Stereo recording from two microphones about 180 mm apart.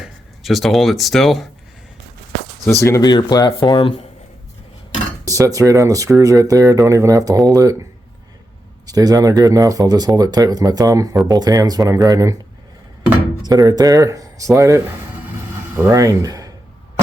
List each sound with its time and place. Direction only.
0.4 s speech: centre (ahead or behind)
2.8 s speech: 20° left (ahead or behind)
5.2 s speech: 20° right (ahead or behind)
8.9 s speech: 20° right (ahead or behind)
13.4 s speech: 20° right (ahead or behind)